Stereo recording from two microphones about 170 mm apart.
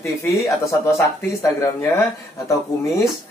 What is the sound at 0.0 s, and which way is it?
Speech, 15° left (ahead or behind).